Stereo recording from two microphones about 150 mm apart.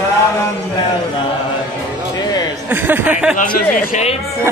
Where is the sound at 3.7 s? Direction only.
60° left (ahead or behind).